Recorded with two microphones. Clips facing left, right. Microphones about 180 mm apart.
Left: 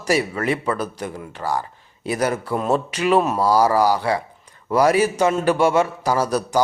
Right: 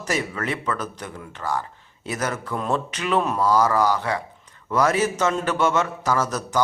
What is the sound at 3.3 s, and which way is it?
Speech, 35° left (ahead or behind).